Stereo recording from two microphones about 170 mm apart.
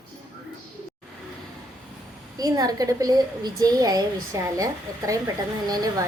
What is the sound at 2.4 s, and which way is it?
A woman's voice, 20° right (ahead or behind).